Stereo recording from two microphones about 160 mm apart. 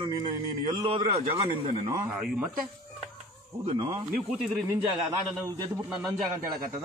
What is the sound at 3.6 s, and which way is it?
Speech, 35° right (ahead or behind).